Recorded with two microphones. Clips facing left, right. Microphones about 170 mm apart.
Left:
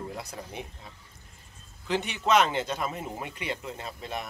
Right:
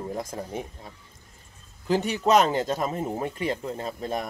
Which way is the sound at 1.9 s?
40° right (ahead or behind).